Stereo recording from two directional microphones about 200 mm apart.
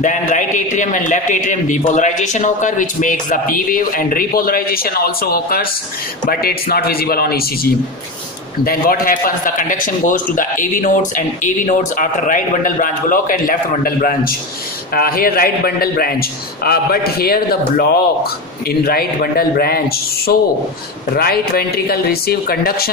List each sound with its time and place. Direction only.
0.0 s a man's voice: 40° left (ahead or behind)